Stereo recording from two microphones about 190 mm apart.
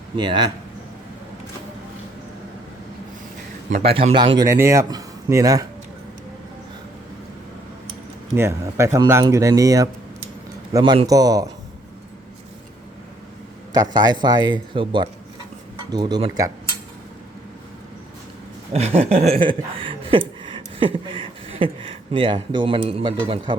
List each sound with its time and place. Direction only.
0.2 s speech: 25° right (ahead or behind)
3.7 s a man's voice: 35° right (ahead or behind)
4.4 s speech: 15° right (ahead or behind)
8.4 s speech: 15° right (ahead or behind)
13.7 s speech: 20° right (ahead or behind)
18.7 s a sound: 35° right (ahead or behind)